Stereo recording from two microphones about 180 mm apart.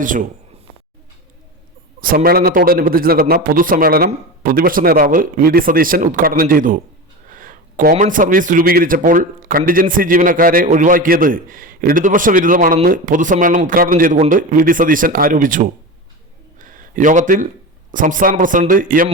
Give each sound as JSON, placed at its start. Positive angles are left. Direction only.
{"t": 2.0, "sound": "a man's voice", "side_deg": -55}
{"t": 16.6, "sound": "a sound", "side_deg": -45}
{"t": 17.9, "sound": "a man's voice", "side_deg": -50}